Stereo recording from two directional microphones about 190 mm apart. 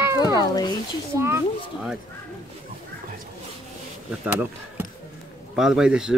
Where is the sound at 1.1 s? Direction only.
15° right (ahead or behind).